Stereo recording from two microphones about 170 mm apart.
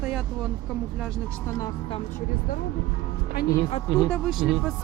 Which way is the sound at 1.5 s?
20° left (ahead or behind).